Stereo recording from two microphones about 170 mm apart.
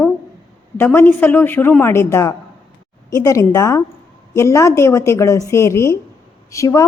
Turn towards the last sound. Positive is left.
turn(degrees=20)  # may be behind; listen again after turning